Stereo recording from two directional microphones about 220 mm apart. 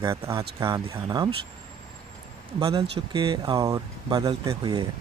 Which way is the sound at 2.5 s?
20° right (ahead or behind).